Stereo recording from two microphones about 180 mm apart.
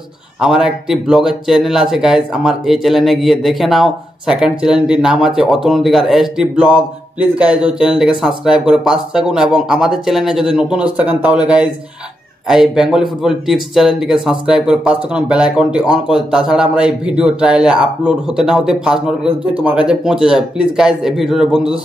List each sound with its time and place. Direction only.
0.4 s speech: 5° right (ahead or behind)